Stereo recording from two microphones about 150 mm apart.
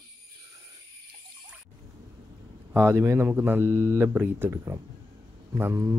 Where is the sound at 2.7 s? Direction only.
15° right (ahead or behind).